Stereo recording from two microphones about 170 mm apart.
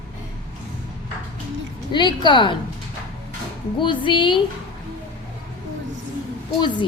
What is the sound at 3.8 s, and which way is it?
Speech, 30° left (ahead or behind).